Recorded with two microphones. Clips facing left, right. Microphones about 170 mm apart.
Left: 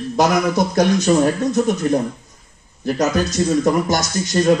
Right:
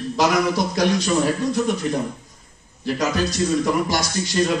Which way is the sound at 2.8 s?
45° left (ahead or behind).